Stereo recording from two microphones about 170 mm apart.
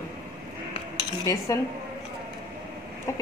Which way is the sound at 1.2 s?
20° left (ahead or behind).